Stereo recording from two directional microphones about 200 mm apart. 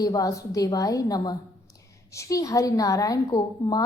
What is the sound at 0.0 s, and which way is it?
A woman's voice, 15° left (ahead or behind).